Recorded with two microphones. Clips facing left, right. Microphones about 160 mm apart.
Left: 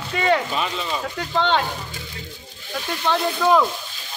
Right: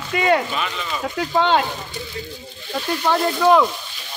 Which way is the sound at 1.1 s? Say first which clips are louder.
Right 4 dB; 10° right (ahead or behind).